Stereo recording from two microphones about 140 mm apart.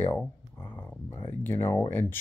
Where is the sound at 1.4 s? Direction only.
15° left (ahead or behind).